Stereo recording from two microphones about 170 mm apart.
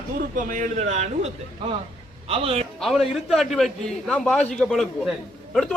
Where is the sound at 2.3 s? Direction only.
35° right (ahead or behind).